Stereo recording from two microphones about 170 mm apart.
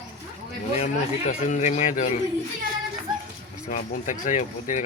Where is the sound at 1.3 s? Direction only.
45° left (ahead or behind).